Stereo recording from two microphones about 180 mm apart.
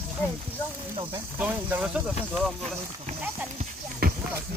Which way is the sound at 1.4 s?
10° right (ahead or behind).